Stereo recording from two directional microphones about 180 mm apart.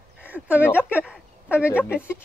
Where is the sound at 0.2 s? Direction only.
10° right (ahead or behind).